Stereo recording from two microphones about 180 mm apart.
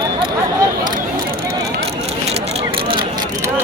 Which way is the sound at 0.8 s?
50° right (ahead or behind).